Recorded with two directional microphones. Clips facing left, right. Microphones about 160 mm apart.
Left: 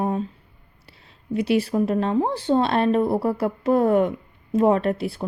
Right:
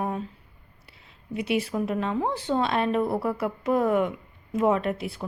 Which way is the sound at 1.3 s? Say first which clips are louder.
Left 6 dB; 35° left (ahead or behind).